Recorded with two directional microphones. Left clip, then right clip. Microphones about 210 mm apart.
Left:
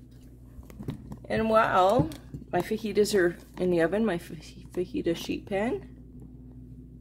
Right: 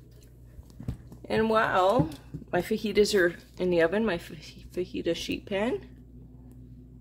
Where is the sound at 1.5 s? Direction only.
5° left (ahead or behind).